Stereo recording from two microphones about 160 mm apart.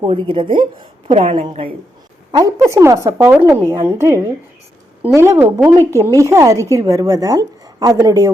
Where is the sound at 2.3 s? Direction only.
20° right (ahead or behind).